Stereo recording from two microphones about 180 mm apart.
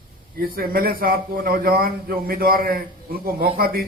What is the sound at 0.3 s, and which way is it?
A man's voice, 55° right (ahead or behind).